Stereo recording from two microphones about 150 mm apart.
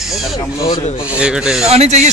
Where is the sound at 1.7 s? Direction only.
45° right (ahead or behind).